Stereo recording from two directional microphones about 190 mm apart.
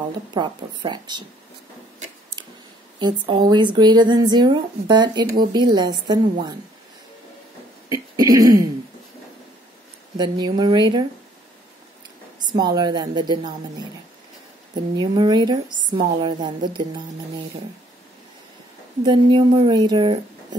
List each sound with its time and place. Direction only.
0.3 s a woman's voice: 25° right (ahead or behind)
3.0 s a woman's voice: 25° right (ahead or behind)
7.9 s speech: 20° right (ahead or behind)
10.1 s a woman's voice: 20° right (ahead or behind)
12.4 s a woman's voice: 20° right (ahead or behind)
15.0 s a woman's voice: 20° right (ahead or behind)
19.0 s a woman's voice: 25° right (ahead or behind)